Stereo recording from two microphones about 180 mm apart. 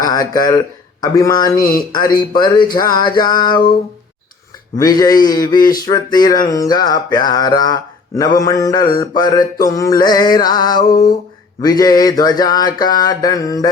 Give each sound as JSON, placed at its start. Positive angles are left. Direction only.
{"t": 0.0, "sound": "speech", "side_deg": 20}
{"t": 1.0, "sound": "mantra", "side_deg": 20}
{"t": 4.8, "sound": "mantra", "side_deg": 20}